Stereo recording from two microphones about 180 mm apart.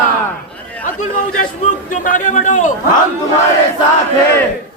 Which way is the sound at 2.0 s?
45° left (ahead or behind).